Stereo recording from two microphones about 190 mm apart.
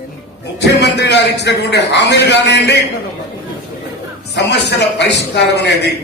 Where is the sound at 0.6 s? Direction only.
65° left (ahead or behind).